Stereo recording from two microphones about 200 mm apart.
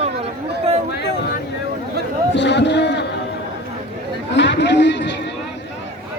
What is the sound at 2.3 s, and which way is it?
Speech, 60° left (ahead or behind).